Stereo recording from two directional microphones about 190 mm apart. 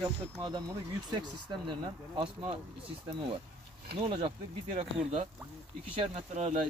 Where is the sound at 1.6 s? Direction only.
25° right (ahead or behind).